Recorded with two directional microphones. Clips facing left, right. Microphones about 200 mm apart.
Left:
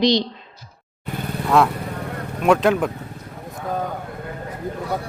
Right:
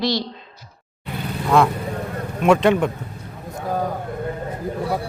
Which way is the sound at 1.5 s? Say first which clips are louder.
Right 1 dB; centre (ahead or behind).